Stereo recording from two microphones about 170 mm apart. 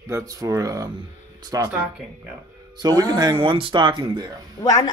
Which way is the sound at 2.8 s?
20° right (ahead or behind).